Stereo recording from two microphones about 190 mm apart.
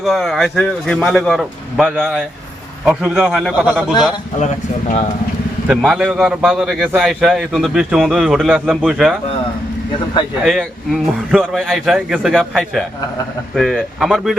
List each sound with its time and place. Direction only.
0.0 s a man's voice: centre (ahead or behind)
4.4 s speech: 35° left (ahead or behind)
5.6 s a man's voice: centre (ahead or behind)
10.4 s a man's voice: centre (ahead or behind)